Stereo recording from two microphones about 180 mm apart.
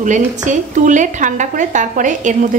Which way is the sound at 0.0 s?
45° right (ahead or behind).